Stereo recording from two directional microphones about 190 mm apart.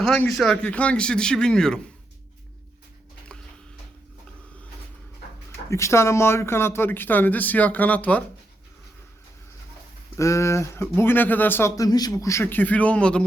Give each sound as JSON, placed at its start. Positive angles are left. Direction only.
{"t": 0.0, "sound": "a man's voice", "side_deg": 5}
{"t": 5.7, "sound": "speech", "side_deg": 15}
{"t": 10.2, "sound": "speech", "side_deg": 15}